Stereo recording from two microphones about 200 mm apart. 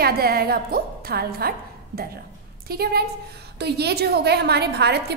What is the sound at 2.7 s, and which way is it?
A woman's voice, 50° right (ahead or behind).